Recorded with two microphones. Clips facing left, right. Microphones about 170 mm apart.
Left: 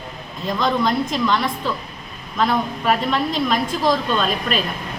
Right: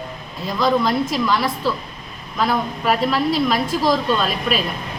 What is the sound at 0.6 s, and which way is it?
A woman's voice, 5° right (ahead or behind).